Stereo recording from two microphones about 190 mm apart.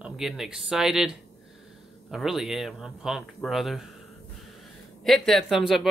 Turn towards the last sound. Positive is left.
turn(degrees=0)  # may be behind; listen again after turning